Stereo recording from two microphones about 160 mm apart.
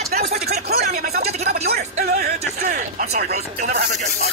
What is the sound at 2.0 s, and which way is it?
Music, 75° right (ahead or behind).